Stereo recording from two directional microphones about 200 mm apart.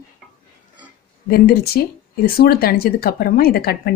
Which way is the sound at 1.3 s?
50° left (ahead or behind).